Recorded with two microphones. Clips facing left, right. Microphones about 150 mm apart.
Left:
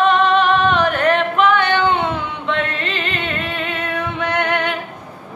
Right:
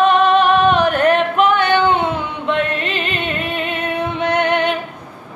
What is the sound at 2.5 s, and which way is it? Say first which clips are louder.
Music: right 3 dB; 15° right (ahead or behind).